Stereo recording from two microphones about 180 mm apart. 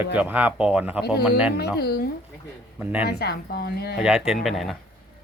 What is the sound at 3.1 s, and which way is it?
Speech, 65° left (ahead or behind).